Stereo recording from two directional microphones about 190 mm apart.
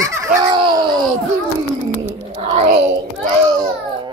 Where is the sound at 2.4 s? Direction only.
30° right (ahead or behind).